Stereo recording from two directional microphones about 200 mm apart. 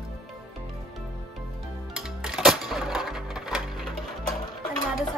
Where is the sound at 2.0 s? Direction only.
Centre (ahead or behind).